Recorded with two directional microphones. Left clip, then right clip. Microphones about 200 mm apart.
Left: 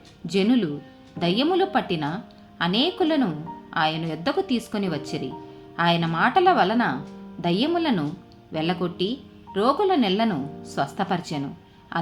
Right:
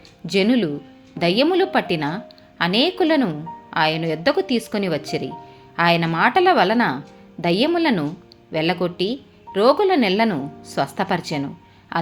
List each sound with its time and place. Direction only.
0.3 s a woman's voice: 25° right (ahead or behind)